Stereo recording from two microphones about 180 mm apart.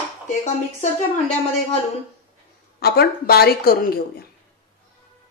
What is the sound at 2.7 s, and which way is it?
Speech, 60° left (ahead or behind).